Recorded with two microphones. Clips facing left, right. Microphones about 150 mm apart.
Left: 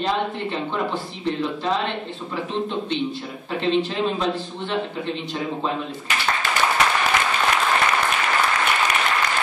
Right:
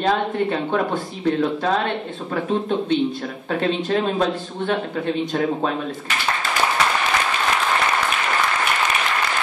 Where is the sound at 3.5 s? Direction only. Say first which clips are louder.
Right 1 dB; 50° right (ahead or behind).